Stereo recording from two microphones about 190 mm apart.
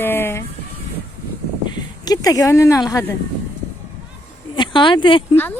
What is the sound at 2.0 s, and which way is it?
Speech, 20° left (ahead or behind).